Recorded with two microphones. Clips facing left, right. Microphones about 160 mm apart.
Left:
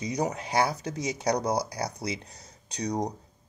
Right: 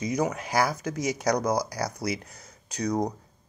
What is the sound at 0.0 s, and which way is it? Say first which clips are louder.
Speech: right 2 dB; 35° left (ahead or behind).